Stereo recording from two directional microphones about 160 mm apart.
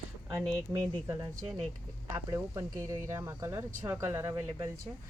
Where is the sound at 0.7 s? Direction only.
20° right (ahead or behind).